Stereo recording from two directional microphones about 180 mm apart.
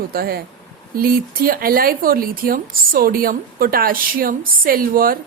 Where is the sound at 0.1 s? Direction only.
55° right (ahead or behind).